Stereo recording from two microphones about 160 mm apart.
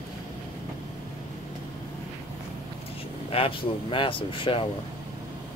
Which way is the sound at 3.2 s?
35° left (ahead or behind).